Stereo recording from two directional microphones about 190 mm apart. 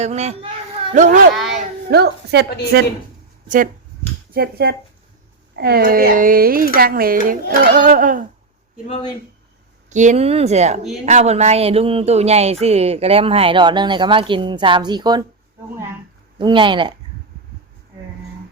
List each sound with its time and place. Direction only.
0.0 s a sound: 35° right (ahead or behind)
0.9 s a child's voice: 45° right (ahead or behind)
1.9 s a woman's voice: 60° right (ahead or behind)
4.3 s a child's voice: 55° right (ahead or behind)
9.9 s a sound: 40° right (ahead or behind); by 15.2 s 20° right (ahead or behind)
16.4 s speech: 25° right (ahead or behind)